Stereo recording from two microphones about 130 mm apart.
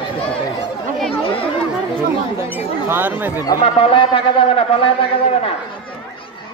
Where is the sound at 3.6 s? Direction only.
40° left (ahead or behind).